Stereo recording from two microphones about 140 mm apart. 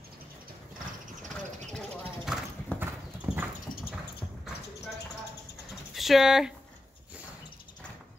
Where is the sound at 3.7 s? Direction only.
85° left.